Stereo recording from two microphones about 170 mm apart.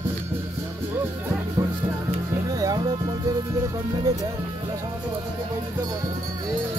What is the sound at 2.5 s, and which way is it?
Music, 20° right (ahead or behind).